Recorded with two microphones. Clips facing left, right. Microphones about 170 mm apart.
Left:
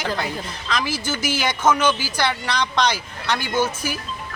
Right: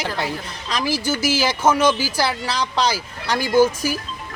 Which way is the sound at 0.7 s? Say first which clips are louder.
Right 3 dB; 35° right (ahead or behind).